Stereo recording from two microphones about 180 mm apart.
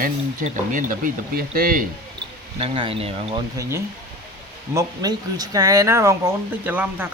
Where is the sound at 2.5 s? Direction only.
30° right (ahead or behind).